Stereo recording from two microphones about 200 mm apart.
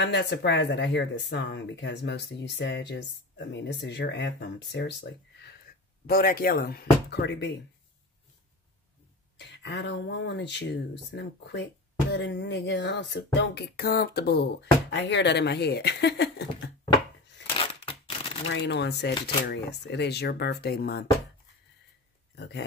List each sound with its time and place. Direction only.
0.0 s speech: 60° left (ahead or behind)
9.4 s speech: 60° left (ahead or behind)
17.6 s scissors: 25° left (ahead or behind)
18.5 s speech: 60° left (ahead or behind)
22.3 s speech: 60° left (ahead or behind)